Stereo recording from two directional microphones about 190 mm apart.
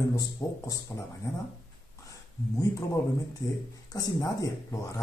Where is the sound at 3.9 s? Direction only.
20° left (ahead or behind).